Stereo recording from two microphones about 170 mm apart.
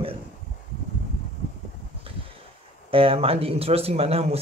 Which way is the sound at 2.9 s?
35° right (ahead or behind).